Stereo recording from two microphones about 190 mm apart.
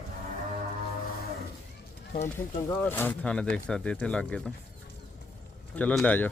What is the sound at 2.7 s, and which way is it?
Speech, 10° left (ahead or behind).